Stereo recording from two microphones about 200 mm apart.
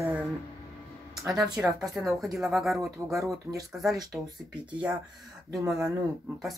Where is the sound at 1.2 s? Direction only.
15° right (ahead or behind).